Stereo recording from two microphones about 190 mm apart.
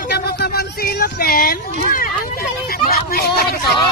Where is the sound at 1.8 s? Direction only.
50° left (ahead or behind).